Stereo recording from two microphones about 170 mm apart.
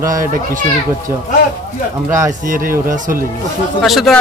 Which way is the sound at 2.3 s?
55° right (ahead or behind).